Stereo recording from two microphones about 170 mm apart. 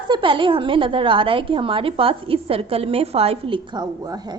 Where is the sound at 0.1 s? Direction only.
30° right (ahead or behind).